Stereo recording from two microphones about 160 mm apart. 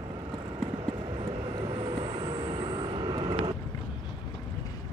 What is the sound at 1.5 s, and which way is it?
Vehicle, 30° right (ahead or behind).